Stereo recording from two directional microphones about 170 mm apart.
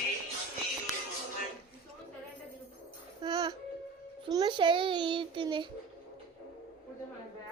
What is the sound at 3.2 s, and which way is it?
Babbling, 25° right (ahead or behind).